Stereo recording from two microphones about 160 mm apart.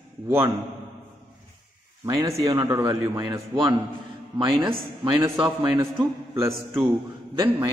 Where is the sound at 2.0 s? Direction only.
20° right (ahead or behind).